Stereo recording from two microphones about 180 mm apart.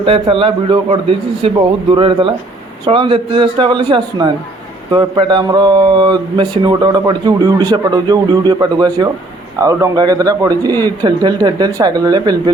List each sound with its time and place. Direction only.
0.0 s a man's voice: 30° right (ahead or behind)